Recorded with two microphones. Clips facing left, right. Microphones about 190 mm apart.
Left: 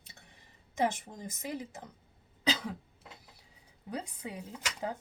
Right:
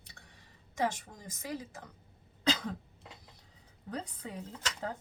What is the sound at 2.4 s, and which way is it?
Cough, 10° left (ahead or behind).